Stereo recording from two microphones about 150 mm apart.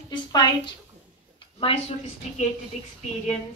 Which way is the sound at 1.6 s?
40° left (ahead or behind).